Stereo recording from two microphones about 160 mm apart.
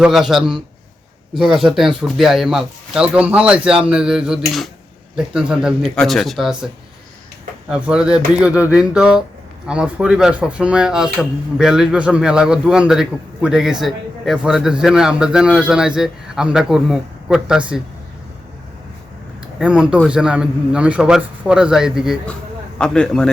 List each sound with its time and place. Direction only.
0.0 s speech: centre (ahead or behind)
7.7 s speech: 5° right (ahead or behind)
19.5 s speech: 5° right (ahead or behind)